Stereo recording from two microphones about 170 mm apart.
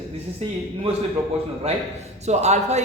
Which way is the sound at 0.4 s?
35° right (ahead or behind).